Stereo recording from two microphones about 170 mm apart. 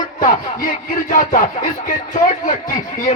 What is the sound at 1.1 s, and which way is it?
Speech, 50° left (ahead or behind).